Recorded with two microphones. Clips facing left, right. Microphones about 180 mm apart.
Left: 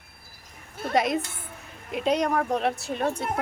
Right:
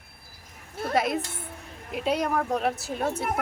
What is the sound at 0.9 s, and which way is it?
A woman's voice, centre (ahead or behind).